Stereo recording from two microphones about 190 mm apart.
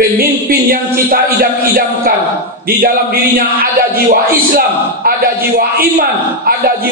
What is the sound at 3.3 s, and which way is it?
Speech, 50° right (ahead or behind).